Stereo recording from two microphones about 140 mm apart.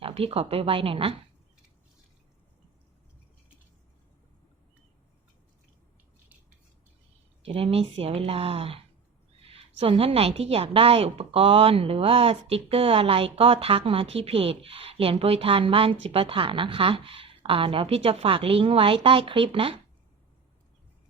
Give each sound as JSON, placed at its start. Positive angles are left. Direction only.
{"t": 0.0, "sound": "a woman's voice", "side_deg": -45}
{"t": 7.4, "sound": "a woman's voice", "side_deg": -45}